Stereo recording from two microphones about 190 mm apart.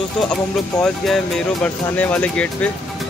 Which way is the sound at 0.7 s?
Centre (ahead or behind).